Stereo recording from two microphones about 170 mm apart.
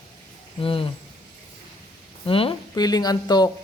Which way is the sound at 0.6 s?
30° left (ahead or behind).